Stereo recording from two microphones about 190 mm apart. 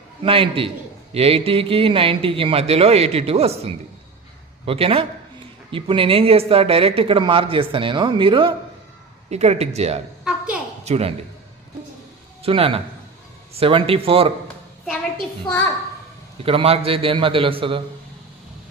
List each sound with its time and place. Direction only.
0.2 s a man's voice: 25° right (ahead or behind)
4.6 s a man's voice: 30° right (ahead or behind)
10.2 s a sound: 5° right (ahead or behind)
10.8 s a man's voice: 35° right (ahead or behind)
12.4 s a man's voice: 30° right (ahead or behind)
16.4 s speech: 30° right (ahead or behind)